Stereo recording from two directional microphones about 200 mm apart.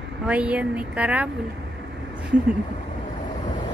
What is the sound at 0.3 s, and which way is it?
Speech, 5° right (ahead or behind).